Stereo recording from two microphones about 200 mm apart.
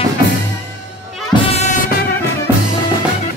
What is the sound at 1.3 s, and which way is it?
Music, 30° left (ahead or behind).